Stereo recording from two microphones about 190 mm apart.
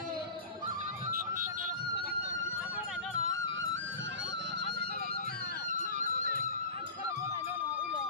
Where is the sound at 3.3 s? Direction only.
90° right.